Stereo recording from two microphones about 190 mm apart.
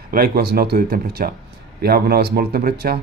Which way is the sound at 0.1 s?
50° right (ahead or behind).